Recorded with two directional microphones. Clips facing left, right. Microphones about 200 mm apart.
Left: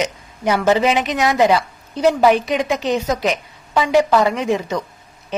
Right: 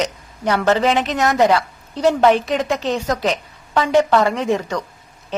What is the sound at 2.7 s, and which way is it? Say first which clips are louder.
Speech: left 2 dB; 15° left (ahead or behind).